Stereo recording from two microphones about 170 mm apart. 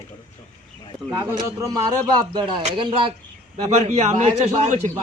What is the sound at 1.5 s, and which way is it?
A man's voice, 25° right (ahead or behind).